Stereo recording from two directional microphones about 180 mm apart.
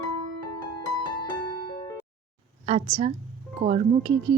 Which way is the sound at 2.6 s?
35° right (ahead or behind).